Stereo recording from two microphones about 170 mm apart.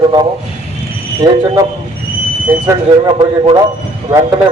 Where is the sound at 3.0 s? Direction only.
25° right (ahead or behind).